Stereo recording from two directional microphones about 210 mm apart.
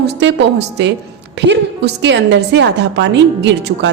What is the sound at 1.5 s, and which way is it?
A woman's voice, 55° right (ahead or behind).